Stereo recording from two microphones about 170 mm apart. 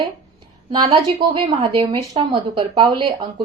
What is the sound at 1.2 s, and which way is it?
A woman's voice, 25° right (ahead or behind).